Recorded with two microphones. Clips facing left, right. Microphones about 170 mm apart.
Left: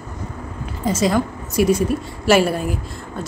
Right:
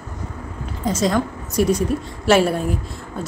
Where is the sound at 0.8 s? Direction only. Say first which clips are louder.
Left 1 dB; 5° left (ahead or behind).